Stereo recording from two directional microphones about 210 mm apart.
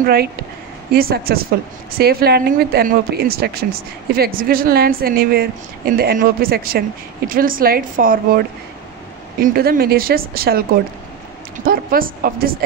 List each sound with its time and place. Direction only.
0.0 s a woman's voice: 50° right (ahead or behind)